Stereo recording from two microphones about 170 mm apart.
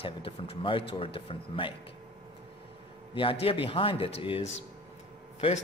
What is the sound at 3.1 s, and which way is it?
Speech, 35° left (ahead or behind).